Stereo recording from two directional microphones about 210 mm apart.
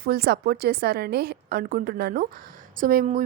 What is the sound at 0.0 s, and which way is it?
A woman's voice, 45° right (ahead or behind).